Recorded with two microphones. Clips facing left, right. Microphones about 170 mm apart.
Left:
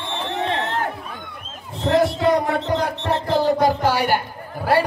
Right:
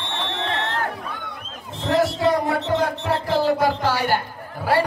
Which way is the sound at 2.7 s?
15° left (ahead or behind).